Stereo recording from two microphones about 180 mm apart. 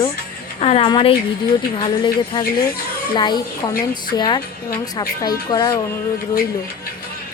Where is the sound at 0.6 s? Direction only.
35° left (ahead or behind).